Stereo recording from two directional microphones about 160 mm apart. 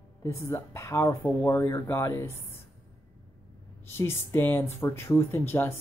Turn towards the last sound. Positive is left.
turn(degrees=15)  # may be behind; listen again after turning